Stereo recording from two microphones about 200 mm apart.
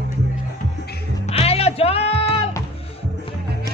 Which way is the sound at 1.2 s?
30° left (ahead or behind).